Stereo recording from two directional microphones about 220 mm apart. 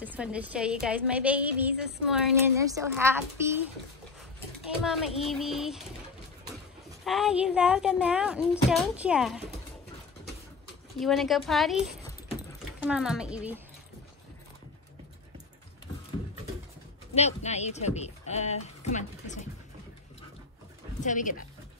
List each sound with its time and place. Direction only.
0.0 s a woman's voice: 5° right (ahead or behind)
2.5 s a woman's voice: 15° right (ahead or behind)
4.8 s a woman's voice: centre (ahead or behind)
7.1 s a woman's voice: centre (ahead or behind)
11.0 s a woman's voice: centre (ahead or behind)
17.1 s speech: 30° left (ahead or behind)
21.0 s speech: 35° left (ahead or behind)